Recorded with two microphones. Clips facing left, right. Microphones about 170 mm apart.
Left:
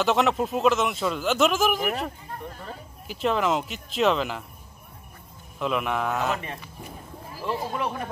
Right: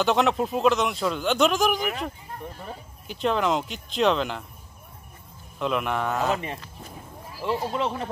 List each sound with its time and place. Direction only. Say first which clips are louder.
0.0 s speech: even; centre (ahead or behind)
3.1 s speech: even; centre (ahead or behind)
5.6 s speech: even; centre (ahead or behind)
7.4 s speech: right 2 dB; 20° right (ahead or behind)